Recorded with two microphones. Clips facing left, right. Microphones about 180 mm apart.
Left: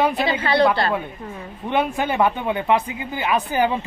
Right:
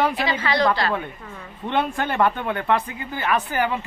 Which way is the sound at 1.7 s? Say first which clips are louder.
Left 2 dB; 10° left (ahead or behind).